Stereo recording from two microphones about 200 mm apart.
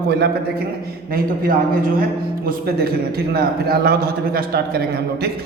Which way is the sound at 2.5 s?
50° right (ahead or behind).